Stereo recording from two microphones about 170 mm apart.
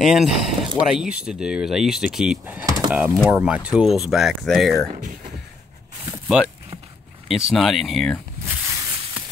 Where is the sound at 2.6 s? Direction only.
20° right (ahead or behind).